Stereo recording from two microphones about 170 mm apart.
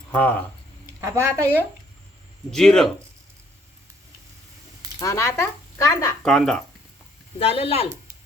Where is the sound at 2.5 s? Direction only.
5° left (ahead or behind).